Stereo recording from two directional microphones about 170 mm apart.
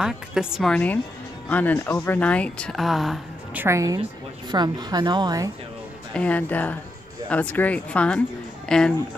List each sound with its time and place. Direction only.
0.0 s speech: 5° right (ahead or behind)
3.6 s a woman's voice: 20° right (ahead or behind)
6.1 s speech: 10° left (ahead or behind)